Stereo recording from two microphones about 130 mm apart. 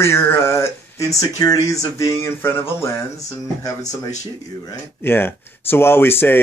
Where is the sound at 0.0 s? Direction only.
20° left (ahead or behind).